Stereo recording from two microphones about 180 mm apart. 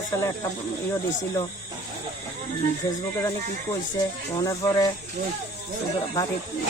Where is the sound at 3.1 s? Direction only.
15° left (ahead or behind).